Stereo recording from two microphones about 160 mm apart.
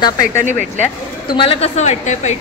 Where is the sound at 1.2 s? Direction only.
30° left (ahead or behind).